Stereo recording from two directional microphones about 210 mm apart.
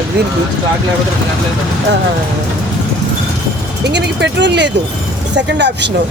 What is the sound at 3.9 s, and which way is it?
Speech, 55° right (ahead or behind).